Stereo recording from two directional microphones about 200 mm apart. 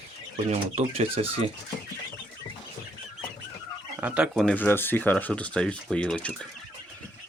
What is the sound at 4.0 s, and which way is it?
Speech, 5° right (ahead or behind).